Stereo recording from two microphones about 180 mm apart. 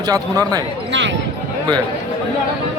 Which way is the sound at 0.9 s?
90° right.